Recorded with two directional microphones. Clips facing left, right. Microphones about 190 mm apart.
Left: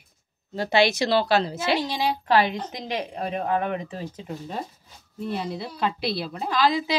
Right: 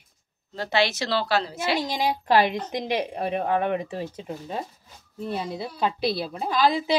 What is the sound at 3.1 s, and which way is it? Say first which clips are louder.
Speech: right 1 dB; 20° right (ahead or behind).